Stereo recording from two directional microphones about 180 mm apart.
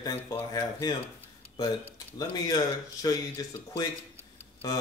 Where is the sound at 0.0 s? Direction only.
20° left (ahead or behind).